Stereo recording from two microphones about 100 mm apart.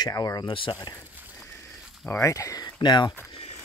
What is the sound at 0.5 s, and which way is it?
Speech, 60° left (ahead or behind).